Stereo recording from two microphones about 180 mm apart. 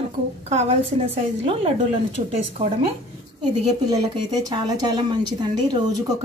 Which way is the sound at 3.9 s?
25° right (ahead or behind).